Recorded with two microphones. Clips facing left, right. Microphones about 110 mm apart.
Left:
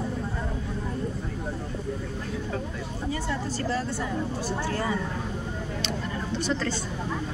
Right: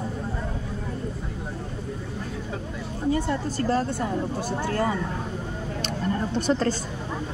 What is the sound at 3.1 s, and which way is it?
A woman's voice, 45° right (ahead or behind).